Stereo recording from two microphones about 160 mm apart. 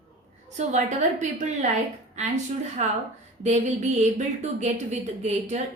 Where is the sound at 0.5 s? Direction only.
45° right (ahead or behind).